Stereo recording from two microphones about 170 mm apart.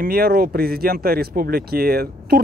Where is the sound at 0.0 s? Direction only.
60° right (ahead or behind).